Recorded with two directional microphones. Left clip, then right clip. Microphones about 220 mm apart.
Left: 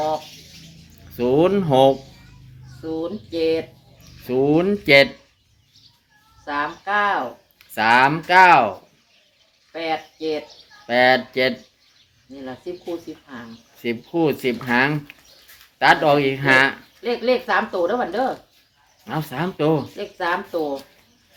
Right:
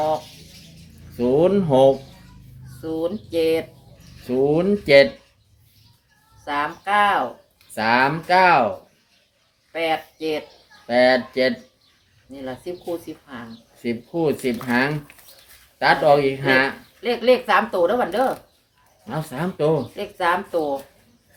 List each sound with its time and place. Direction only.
1.1 s speech: 15° left (ahead or behind)
2.8 s speech: 5° right (ahead or behind)
4.3 s speech: 15° left (ahead or behind)
6.4 s speech: 5° right (ahead or behind)
7.8 s speech: 15° left (ahead or behind)
9.7 s speech: 5° right (ahead or behind)
10.8 s speech: 15° left (ahead or behind)
12.3 s speech: 5° right (ahead or behind)
13.8 s speech: 15° left (ahead or behind)
17.0 s speech: 5° right (ahead or behind)
19.0 s speech: 15° left (ahead or behind)
20.0 s speech: 5° right (ahead or behind)